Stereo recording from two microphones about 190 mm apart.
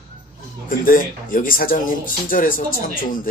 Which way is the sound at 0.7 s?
45° left (ahead or behind).